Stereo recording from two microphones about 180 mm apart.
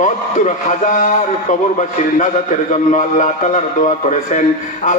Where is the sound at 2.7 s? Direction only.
40° left (ahead or behind).